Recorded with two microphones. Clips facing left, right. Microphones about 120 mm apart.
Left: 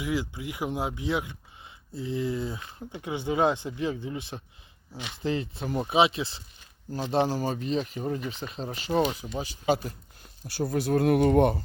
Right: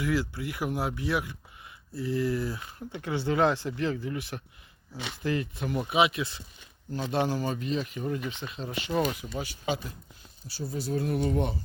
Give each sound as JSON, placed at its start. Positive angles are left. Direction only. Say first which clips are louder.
{"t": 0.0, "sound": "speech", "louder": "right 1 dB", "side_deg": 15}
{"t": 9.6, "sound": "speech", "louder": "left 7 dB", "side_deg": 50}
{"t": 10.6, "sound": "speech", "louder": "left 6 dB", "side_deg": 65}